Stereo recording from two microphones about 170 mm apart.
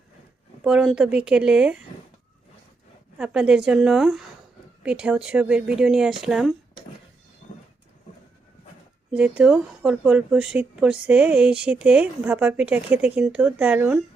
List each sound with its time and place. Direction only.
0.6 s speech: 5° right (ahead or behind)
3.2 s speech: 5° right (ahead or behind)
7.4 s a sound: 50° left (ahead or behind)
9.1 s speech: 5° right (ahead or behind)